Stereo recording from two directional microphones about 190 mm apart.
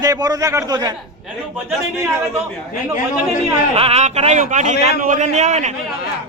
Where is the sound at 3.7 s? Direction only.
35° right (ahead or behind).